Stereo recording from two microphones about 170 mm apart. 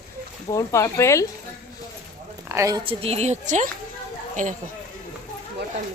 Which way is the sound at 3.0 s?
40° right (ahead or behind).